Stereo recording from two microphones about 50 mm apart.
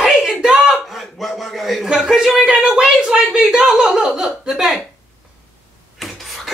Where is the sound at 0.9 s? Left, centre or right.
Centre.